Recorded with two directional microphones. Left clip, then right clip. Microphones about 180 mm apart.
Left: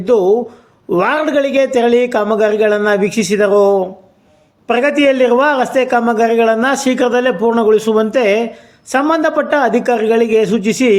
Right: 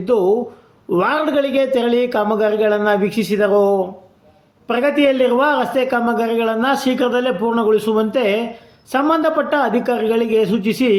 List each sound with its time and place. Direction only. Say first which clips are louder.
0.0 s a man's voice: left 4 dB; 20° left (ahead or behind)